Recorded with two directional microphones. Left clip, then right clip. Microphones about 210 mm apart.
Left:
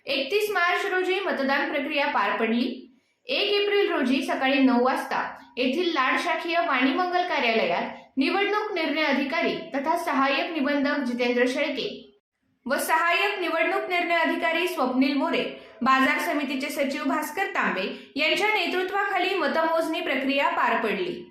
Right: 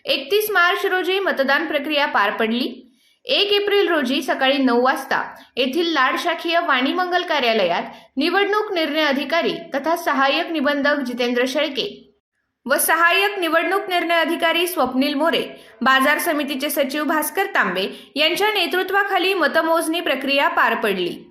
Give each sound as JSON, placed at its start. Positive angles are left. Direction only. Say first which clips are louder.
{"t": 0.1, "sound": "a woman's voice", "louder": "right 6 dB", "side_deg": -45}